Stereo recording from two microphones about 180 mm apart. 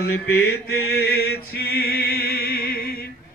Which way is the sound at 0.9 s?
60° left (ahead or behind).